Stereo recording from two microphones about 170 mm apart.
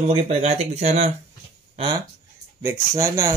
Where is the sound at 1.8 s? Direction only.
25° right (ahead or behind).